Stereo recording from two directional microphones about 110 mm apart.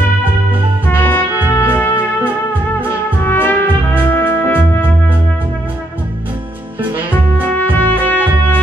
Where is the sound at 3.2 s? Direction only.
15° left (ahead or behind).